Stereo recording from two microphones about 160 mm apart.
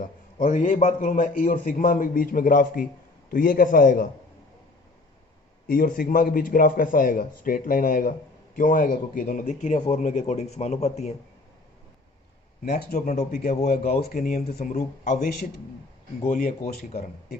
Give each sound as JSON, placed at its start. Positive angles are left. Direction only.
{"t": 0.0, "sound": "a man's voice", "side_deg": 55}
{"t": 5.6, "sound": "a man's voice", "side_deg": 60}
{"t": 13.1, "sound": "speech", "side_deg": 60}
{"t": 13.7, "sound": "a man's voice", "side_deg": 70}
{"t": 14.7, "sound": "speech", "side_deg": 45}
{"t": 16.2, "sound": "a man's voice", "side_deg": 60}